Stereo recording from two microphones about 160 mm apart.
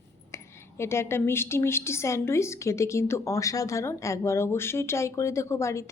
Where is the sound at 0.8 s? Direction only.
15° left (ahead or behind).